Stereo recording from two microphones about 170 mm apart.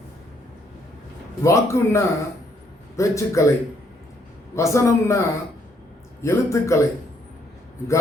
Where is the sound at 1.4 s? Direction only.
15° left (ahead or behind).